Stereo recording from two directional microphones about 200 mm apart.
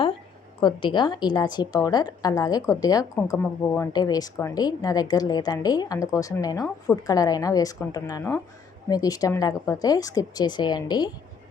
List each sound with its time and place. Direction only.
0.6 s a woman's voice: 25° left (ahead or behind)